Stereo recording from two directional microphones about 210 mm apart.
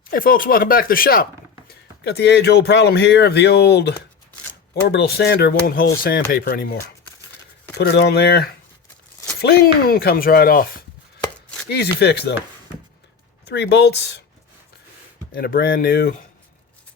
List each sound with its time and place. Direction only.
0.1 s speech: 45° left (ahead or behind)
11.7 s speech: 50° left (ahead or behind)
13.5 s speech: 55° left (ahead or behind)
15.3 s speech: 45° left (ahead or behind)